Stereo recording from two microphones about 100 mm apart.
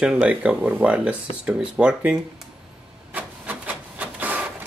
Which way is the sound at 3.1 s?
15° right (ahead or behind).